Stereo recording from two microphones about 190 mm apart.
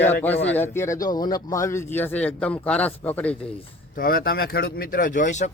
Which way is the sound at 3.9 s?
50° left (ahead or behind).